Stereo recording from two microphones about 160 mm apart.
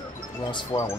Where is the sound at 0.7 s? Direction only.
25° left (ahead or behind).